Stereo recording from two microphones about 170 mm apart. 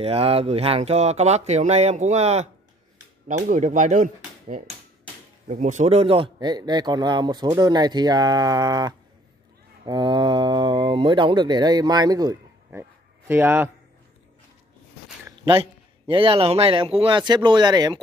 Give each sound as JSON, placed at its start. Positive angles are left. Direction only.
{"t": 0.0, "sound": "speech", "side_deg": -35}
{"t": 16.1, "sound": "speech", "side_deg": -30}